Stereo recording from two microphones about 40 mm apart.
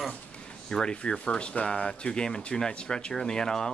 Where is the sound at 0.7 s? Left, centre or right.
Left.